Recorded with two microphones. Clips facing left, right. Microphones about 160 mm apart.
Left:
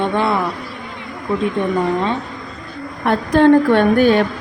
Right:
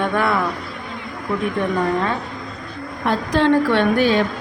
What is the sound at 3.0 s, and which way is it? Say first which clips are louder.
A woman's voice: left 5 dB; 50° left (ahead or behind).